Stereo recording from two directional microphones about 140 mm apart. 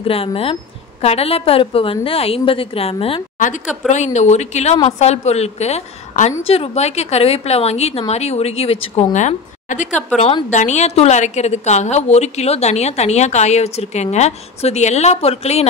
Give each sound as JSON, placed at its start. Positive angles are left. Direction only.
{"t": 0.0, "sound": "a woman's voice", "side_deg": 40}
{"t": 3.3, "sound": "a woman's voice", "side_deg": 65}
{"t": 9.1, "sound": "a woman's voice", "side_deg": 60}